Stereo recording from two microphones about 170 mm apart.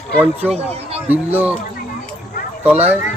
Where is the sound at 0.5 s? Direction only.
35° right (ahead or behind).